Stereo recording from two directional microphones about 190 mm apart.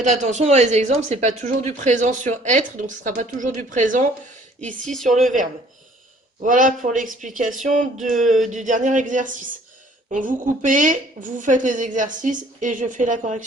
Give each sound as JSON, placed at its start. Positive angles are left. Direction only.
{"t": 0.0, "sound": "speech", "side_deg": -40}
{"t": 4.6, "sound": "speech", "side_deg": 5}
{"t": 6.4, "sound": "a woman's voice", "side_deg": -45}